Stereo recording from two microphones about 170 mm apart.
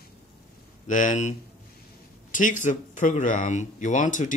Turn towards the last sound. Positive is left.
turn(degrees=45)  # may be behind; listen again after turning